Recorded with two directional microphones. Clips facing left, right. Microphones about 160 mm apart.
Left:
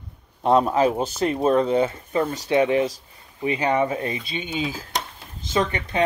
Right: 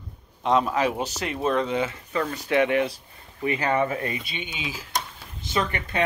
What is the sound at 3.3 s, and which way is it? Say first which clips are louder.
Speech: left 2 dB; 20° left (ahead or behind).